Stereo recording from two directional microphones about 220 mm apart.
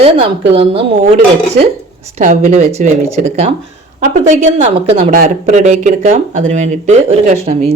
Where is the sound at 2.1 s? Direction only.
35° right (ahead or behind).